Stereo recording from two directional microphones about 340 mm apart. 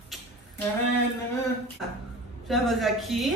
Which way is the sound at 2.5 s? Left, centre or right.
Centre.